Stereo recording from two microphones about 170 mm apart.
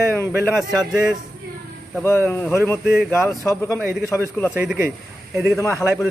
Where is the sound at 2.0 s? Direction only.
15° left (ahead or behind).